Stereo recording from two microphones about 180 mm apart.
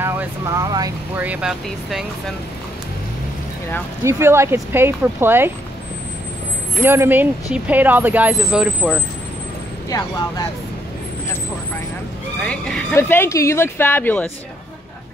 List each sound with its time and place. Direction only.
0.0 s speech: 15° right (ahead or behind)
1.1 s speech: 10° right (ahead or behind)
4.0 s speech: 15° right (ahead or behind)
6.8 s speech: 15° right (ahead or behind)
9.8 s speech: 20° left (ahead or behind)
12.4 s speech: 5° left (ahead or behind)